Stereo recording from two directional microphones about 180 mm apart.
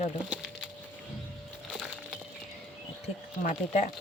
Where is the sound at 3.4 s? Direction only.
45° left (ahead or behind).